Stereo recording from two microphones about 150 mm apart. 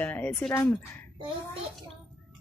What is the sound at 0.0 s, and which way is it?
A woman's voice, 10° left (ahead or behind).